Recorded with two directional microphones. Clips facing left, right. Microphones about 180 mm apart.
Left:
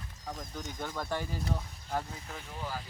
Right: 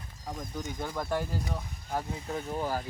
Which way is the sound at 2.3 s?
45° right (ahead or behind).